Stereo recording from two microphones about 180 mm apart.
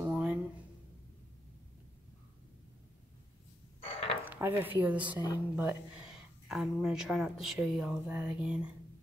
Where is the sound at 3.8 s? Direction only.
35° left (ahead or behind).